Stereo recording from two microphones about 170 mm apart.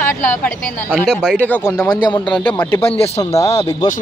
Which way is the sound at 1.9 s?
25° left (ahead or behind).